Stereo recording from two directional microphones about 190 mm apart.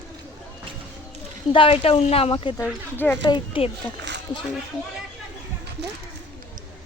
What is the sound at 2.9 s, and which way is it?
Speech, 10° left (ahead or behind).